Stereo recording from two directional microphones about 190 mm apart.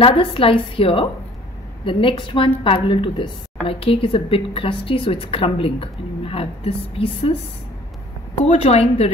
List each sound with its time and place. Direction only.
0.0 s a woman's voice: 30° left (ahead or behind)
8.4 s a woman's voice: 30° left (ahead or behind)